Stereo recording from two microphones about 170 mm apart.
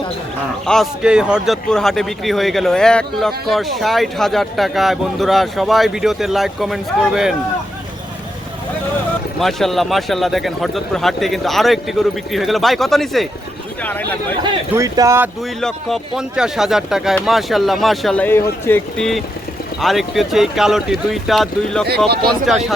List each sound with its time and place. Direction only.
0.6 s a man's voice: centre (ahead or behind)
9.4 s a man's voice: centre (ahead or behind)
14.4 s speech: 20° right (ahead or behind)
15.6 s a man's voice: centre (ahead or behind); by 18.8 s 15° left (ahead or behind)
18.9 s a man's voice: centre (ahead or behind)
21.8 s speech: 70° right (ahead or behind)
22.5 s a man's voice: centre (ahead or behind)